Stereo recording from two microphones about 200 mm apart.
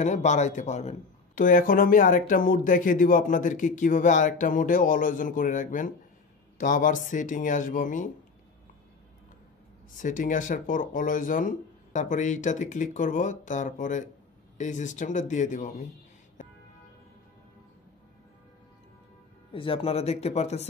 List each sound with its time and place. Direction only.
0.0 s a man's voice: 35° left (ahead or behind)
9.9 s a man's voice: 40° left (ahead or behind)
19.5 s a man's voice: 25° left (ahead or behind)